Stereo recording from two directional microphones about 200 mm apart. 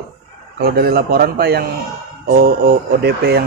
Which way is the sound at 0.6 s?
50° right (ahead or behind).